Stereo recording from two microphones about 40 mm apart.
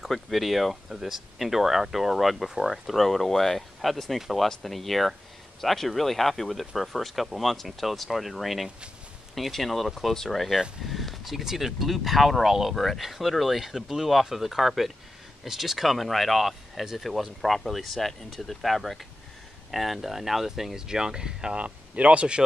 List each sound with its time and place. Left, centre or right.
0.1 s speech: centre
21.5 s speech: right